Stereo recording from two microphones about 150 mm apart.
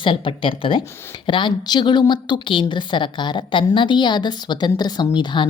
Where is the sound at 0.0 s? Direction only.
35° left (ahead or behind).